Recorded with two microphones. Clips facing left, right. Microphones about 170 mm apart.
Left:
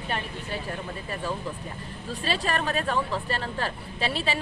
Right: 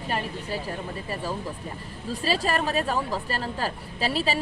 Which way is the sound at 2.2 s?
35° right (ahead or behind).